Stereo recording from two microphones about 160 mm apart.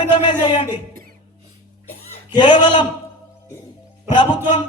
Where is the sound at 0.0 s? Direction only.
30° left (ahead or behind).